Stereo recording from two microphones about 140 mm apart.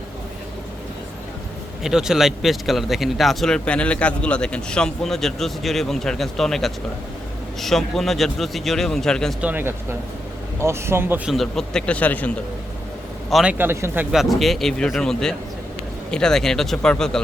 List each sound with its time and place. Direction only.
1.8 s speech: 5° right (ahead or behind)
9.4 s speech: 15° right (ahead or behind)
11.3 s speech: centre (ahead or behind)
13.3 s speech: 10° right (ahead or behind)
14.1 s speech: centre (ahead or behind)